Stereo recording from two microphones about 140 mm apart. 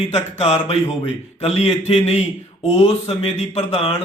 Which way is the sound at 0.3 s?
45° left (ahead or behind).